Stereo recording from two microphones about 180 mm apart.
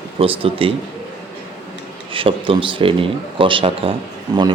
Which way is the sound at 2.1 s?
30° right (ahead or behind).